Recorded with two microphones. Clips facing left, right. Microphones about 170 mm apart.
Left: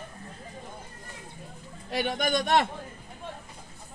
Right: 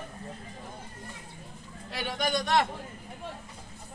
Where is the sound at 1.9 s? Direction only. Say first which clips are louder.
Left 3 dB; 55° left (ahead or behind).